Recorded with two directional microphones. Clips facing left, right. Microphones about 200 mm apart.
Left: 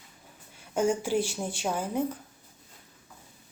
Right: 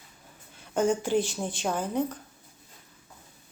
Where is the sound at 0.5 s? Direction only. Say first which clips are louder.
Right 1 dB; 10° left (ahead or behind).